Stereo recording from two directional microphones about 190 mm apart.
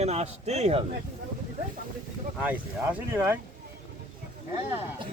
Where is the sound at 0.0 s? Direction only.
35° right (ahead or behind).